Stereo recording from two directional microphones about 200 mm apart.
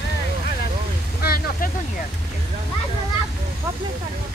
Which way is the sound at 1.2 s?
50° left (ahead or behind).